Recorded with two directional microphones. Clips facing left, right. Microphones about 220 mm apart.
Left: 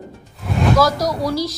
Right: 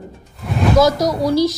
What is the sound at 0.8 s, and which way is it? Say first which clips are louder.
Speech: right 3 dB; 20° right (ahead or behind).